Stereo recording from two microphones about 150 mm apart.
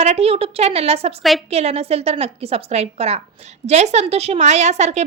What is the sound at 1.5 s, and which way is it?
A woman's voice, 45° right (ahead or behind).